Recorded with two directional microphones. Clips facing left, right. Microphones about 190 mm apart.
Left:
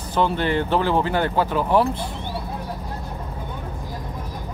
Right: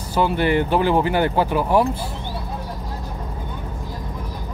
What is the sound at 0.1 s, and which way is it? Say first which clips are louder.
Speech: right 2 dB; 10° right (ahead or behind).